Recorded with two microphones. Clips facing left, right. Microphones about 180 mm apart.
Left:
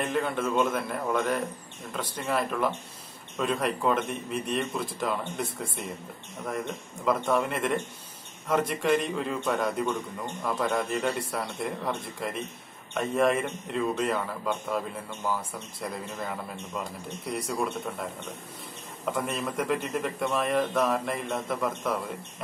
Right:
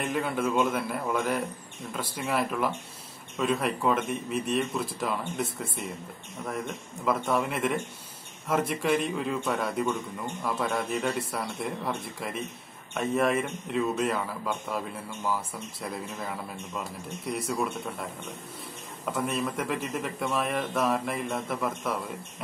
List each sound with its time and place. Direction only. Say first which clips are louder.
0.0 s a man's voice: even; 5° right (ahead or behind)
7.1 s a man's voice: left 1 dB; 5° right (ahead or behind)
19.1 s a man's voice: right 1 dB; centre (ahead or behind)